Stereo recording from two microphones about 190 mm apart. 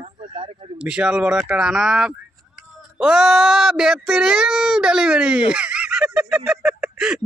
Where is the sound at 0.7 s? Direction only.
5° right (ahead or behind).